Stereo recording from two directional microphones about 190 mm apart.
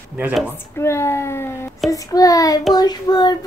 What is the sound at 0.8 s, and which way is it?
A child's voice, 15° left (ahead or behind).